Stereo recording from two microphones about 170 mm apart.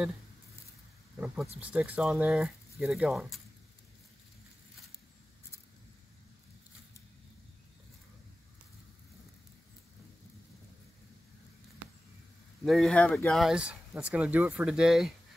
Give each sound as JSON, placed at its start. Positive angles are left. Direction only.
{"t": 1.1, "sound": "speech", "side_deg": -5}
{"t": 12.6, "sound": "speech", "side_deg": 0}